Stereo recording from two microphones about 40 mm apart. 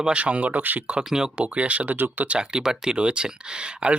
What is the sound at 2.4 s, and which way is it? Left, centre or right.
Speech, centre.